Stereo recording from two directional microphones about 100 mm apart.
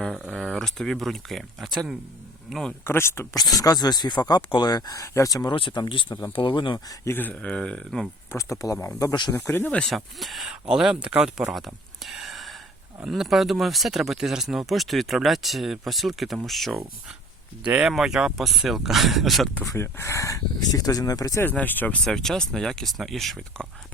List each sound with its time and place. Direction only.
0.3 s speech: 5° left (ahead or behind)
2.8 s speech: 25° left (ahead or behind)
3.3 s speech: 40° left (ahead or behind)
5.5 s speech: 55° left (ahead or behind)
6.7 s speech: 30° left (ahead or behind)
7.2 s speech: 15° left (ahead or behind)
8.3 s speech: 30° left (ahead or behind)
9.9 s speech: centre (ahead or behind)
17.6 s speech: 10° right (ahead or behind)
19.6 s speech: 25° left (ahead or behind)
21.5 s speech: 20° left (ahead or behind)
22.0 s speech: 5° left (ahead or behind)